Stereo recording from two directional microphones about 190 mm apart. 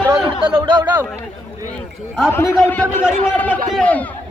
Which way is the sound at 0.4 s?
20° right (ahead or behind).